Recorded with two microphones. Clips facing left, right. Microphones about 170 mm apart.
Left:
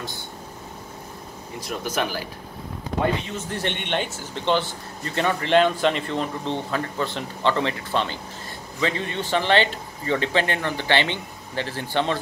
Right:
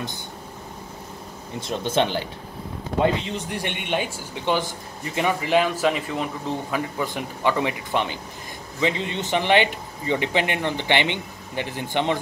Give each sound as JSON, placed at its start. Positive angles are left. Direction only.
{"t": 1.6, "sound": "speech", "side_deg": -25}
{"t": 3.3, "sound": "speech", "side_deg": -15}